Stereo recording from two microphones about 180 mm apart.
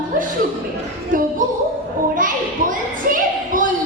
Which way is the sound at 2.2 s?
50° right (ahead or behind).